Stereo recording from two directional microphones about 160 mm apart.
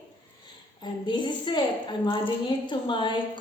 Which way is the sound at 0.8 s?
30° left (ahead or behind).